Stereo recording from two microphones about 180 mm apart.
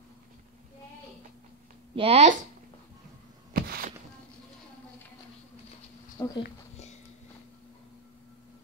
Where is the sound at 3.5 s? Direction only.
55° right (ahead or behind).